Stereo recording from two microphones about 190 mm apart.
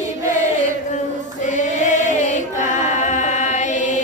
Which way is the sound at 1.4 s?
40° left (ahead or behind).